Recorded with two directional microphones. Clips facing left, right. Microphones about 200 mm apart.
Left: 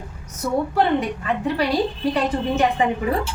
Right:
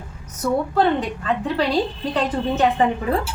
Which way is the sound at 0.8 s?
10° left (ahead or behind).